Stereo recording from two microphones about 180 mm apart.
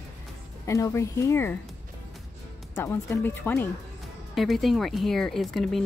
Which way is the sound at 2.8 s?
15° left (ahead or behind).